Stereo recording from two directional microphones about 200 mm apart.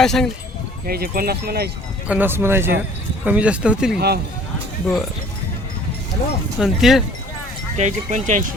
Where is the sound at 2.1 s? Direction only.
10° right (ahead or behind).